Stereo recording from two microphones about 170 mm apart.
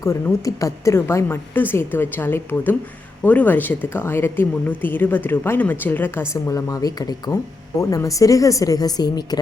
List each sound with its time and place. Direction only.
0.0 s a woman's voice: 15° left (ahead or behind)